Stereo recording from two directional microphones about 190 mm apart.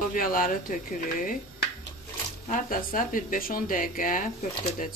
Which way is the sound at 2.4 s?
45° left (ahead or behind).